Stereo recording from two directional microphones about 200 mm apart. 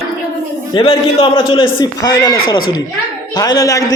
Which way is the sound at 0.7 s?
25° left (ahead or behind).